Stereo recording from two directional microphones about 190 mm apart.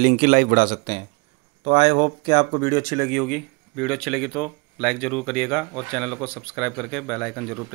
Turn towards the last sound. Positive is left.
turn(degrees=5)  # may be behind; listen again after turning